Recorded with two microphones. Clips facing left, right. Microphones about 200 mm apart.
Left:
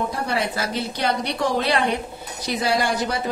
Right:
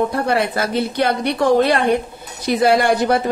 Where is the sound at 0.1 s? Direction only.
55° right (ahead or behind).